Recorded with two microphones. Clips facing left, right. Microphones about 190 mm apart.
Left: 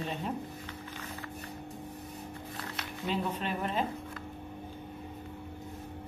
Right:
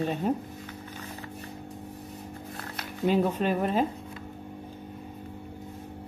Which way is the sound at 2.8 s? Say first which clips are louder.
Right 9 dB; 45° right (ahead or behind).